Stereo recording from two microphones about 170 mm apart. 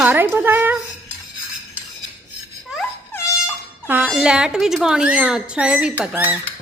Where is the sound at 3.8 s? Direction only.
10° right (ahead or behind).